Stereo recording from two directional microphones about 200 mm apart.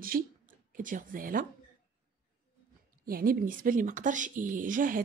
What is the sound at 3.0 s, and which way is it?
Speech, 45° right (ahead or behind).